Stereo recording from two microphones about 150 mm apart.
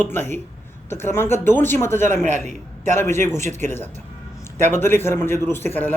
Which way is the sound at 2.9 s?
15° left (ahead or behind).